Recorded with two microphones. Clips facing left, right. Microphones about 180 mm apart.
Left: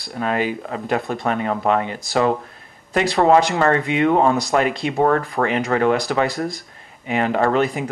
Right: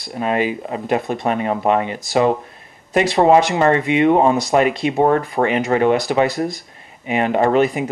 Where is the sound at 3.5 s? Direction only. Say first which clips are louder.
Right 3 dB; 20° right (ahead or behind).